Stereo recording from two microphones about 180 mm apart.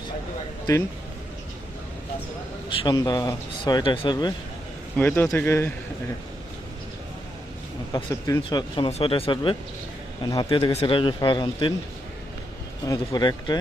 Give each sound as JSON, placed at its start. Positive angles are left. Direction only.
{"t": 2.6, "sound": "speech", "side_deg": 25}
{"t": 4.9, "sound": "speech", "side_deg": 10}
{"t": 7.9, "sound": "speech", "side_deg": 25}
{"t": 12.9, "sound": "speech", "side_deg": 20}